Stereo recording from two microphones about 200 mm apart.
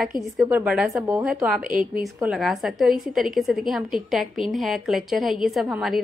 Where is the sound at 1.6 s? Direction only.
45° right (ahead or behind).